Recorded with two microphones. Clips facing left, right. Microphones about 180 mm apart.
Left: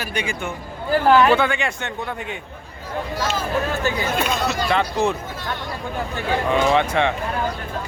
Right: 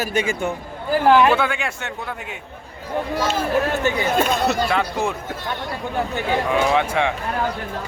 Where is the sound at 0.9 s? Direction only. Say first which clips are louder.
Even; 5° right (ahead or behind).